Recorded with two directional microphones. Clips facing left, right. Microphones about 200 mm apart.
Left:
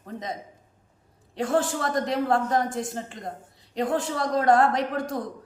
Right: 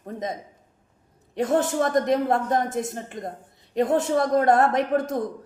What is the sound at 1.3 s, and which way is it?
Speech, 20° right (ahead or behind).